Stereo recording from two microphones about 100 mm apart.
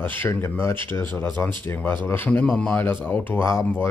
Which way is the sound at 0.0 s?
20° left (ahead or behind).